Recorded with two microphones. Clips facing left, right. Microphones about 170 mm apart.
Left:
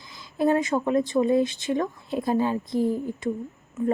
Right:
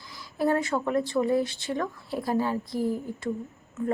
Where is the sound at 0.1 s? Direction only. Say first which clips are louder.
Left 3 dB; 20° left (ahead or behind).